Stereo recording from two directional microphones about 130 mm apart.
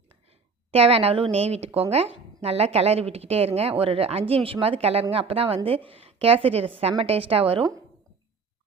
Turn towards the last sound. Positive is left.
turn(degrees=-45)  # may be behind; listen again after turning